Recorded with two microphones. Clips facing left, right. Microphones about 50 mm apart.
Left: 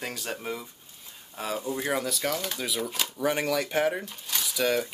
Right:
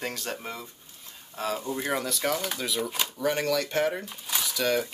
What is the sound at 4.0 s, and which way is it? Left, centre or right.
Speech, centre.